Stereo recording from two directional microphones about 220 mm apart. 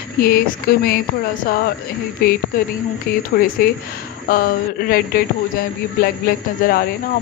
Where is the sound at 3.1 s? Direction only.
40° left (ahead or behind).